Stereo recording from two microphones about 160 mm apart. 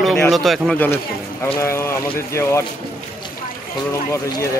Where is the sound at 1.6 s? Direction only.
15° left (ahead or behind).